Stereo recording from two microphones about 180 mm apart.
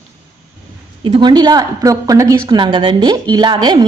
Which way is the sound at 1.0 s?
25° right (ahead or behind).